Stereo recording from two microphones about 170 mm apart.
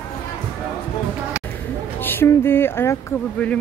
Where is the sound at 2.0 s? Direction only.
15° left (ahead or behind).